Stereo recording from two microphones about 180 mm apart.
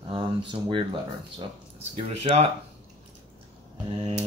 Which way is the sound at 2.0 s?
35° right (ahead or behind).